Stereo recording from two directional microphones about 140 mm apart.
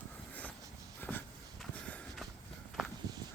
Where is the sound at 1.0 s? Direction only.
15° left (ahead or behind).